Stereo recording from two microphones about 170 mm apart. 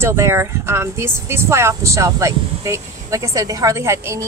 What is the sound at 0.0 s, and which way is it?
A woman's voice, 15° right (ahead or behind).